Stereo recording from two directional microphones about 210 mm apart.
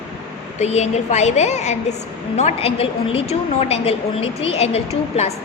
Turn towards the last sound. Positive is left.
turn(degrees=30)  # may be behind; listen again after turning